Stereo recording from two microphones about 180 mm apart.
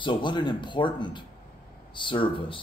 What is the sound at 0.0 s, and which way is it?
Speech, 25° left (ahead or behind).